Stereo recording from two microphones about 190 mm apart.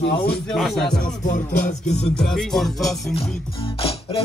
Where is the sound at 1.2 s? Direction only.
40° left (ahead or behind).